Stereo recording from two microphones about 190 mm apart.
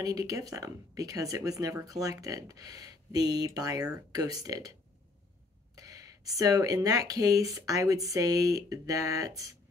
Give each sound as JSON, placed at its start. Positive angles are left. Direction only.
{"t": 0.0, "sound": "speech", "side_deg": -20}
{"t": 5.8, "sound": "speech", "side_deg": -20}